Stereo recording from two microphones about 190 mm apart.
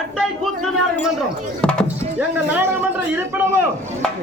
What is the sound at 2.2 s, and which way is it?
Speech, 10° right (ahead or behind).